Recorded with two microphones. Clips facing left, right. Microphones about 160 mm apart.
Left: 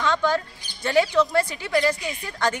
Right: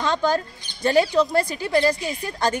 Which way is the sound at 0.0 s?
40° right (ahead or behind).